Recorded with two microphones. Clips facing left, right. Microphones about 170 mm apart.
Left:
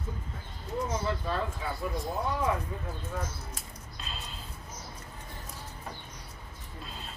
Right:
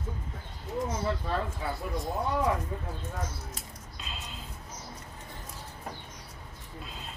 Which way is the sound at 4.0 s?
15° right (ahead or behind).